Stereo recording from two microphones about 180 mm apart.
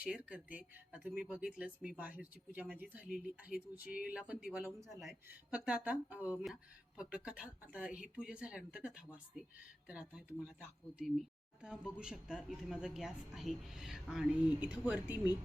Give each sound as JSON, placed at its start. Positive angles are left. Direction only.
{"t": 0.0, "sound": "a woman's voice", "side_deg": -5}
{"t": 15.1, "sound": "speech", "side_deg": 20}